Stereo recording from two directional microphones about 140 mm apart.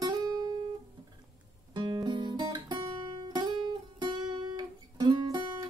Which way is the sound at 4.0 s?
35° right (ahead or behind).